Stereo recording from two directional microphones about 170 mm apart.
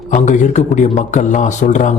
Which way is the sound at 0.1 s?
45° left (ahead or behind).